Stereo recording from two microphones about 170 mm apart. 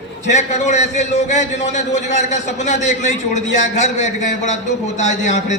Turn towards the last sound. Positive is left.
turn(degrees=45)  # may be behind; listen again after turning